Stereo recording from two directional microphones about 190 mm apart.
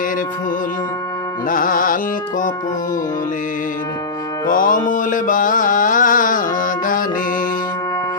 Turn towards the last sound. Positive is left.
turn(degrees=45)  # may be behind; listen again after turning